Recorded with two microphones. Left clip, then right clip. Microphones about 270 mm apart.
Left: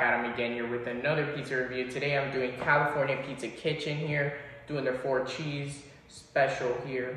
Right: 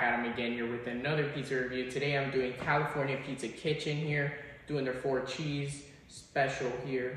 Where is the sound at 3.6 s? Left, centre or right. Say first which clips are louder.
Left 2 dB; centre.